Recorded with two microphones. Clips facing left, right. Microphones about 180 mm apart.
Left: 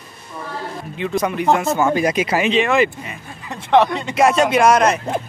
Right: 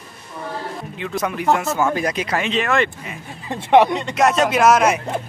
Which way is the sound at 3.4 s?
15° right (ahead or behind).